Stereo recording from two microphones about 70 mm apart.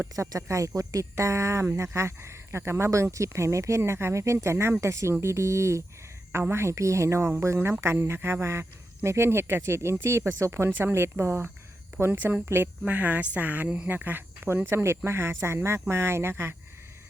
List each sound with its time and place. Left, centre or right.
0.3 s speech: right
10.7 s speech: right
12.1 s speech: right